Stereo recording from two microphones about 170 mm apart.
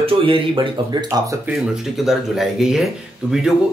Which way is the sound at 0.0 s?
30° right (ahead or behind).